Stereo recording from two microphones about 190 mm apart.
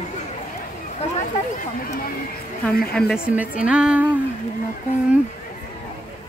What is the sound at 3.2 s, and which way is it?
Speech, 5° right (ahead or behind).